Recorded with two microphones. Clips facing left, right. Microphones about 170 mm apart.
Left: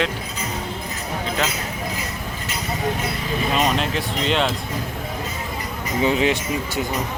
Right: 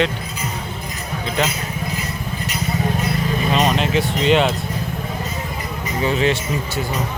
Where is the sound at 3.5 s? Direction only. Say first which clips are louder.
Right 4 dB; centre (ahead or behind).